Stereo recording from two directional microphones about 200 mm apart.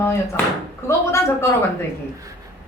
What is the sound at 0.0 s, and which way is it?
A man's voice, 10° left (ahead or behind).